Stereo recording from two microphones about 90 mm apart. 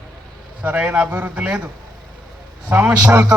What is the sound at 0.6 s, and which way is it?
A man's voice, 20° right (ahead or behind).